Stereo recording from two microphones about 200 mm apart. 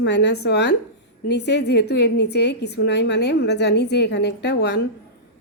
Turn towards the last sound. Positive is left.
turn(degrees=60)  # may be behind; listen again after turning